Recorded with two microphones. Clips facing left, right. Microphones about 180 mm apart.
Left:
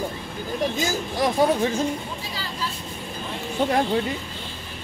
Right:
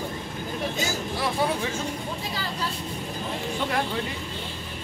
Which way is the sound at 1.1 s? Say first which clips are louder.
Left 7 dB; 40° left (ahead or behind).